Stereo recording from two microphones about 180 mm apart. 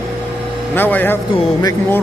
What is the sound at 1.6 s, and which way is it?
Speech, 20° left (ahead or behind).